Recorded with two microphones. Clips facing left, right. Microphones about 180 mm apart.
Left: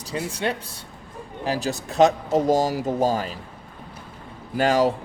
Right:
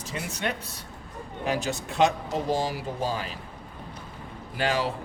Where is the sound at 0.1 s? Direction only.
30° left (ahead or behind).